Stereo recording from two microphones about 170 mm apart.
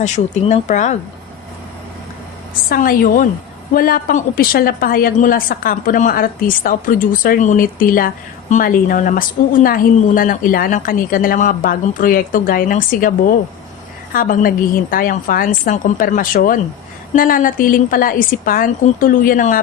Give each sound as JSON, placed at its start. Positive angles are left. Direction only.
{"t": 0.0, "sound": "speech", "side_deg": 45}
{"t": 2.6, "sound": "a woman's voice", "side_deg": 60}